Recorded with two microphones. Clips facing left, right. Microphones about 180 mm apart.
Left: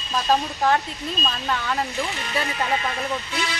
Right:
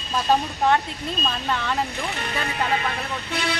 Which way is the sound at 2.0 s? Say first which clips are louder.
Right 1 dB; 60° right (ahead or behind).